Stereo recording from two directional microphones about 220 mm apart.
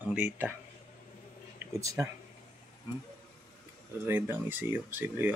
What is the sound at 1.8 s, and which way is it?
Speech, 15° right (ahead or behind).